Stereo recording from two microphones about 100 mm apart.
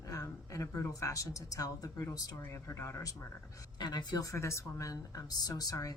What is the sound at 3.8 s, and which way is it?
Speech, 45° left (ahead or behind).